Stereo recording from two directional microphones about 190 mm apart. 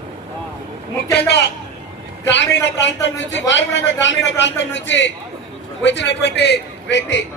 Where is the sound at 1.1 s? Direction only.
60° left (ahead or behind).